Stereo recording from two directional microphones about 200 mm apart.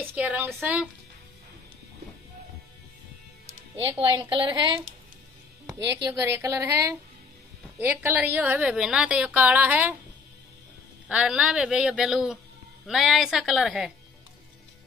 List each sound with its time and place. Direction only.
0.0 s a woman's voice: 5° right (ahead or behind)
3.8 s a woman's voice: 20° right (ahead or behind)
11.1 s a man's voice: 5° right (ahead or behind)